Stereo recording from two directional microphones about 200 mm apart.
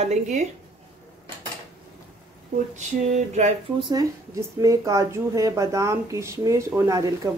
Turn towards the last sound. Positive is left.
turn(degrees=-15)  # may be behind; listen again after turning